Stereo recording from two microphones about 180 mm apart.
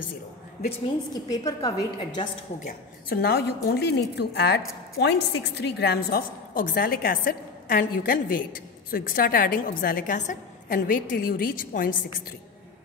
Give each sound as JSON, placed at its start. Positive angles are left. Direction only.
{"t": 1.1, "sound": "a woman's voice", "side_deg": 20}
{"t": 3.1, "sound": "a woman's voice", "side_deg": 60}